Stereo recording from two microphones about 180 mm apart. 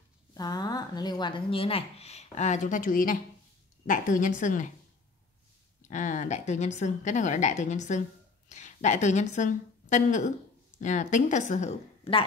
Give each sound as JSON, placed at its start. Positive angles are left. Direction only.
{"t": 0.3, "sound": "a woman's voice", "side_deg": 20}
{"t": 5.9, "sound": "a woman's voice", "side_deg": 45}